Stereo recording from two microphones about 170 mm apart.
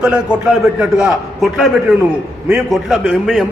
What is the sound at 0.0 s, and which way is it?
A man's voice, 5° right (ahead or behind).